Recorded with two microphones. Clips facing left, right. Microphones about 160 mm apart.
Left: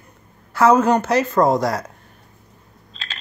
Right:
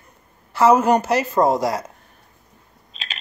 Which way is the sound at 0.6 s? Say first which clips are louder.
Even; 10° right (ahead or behind).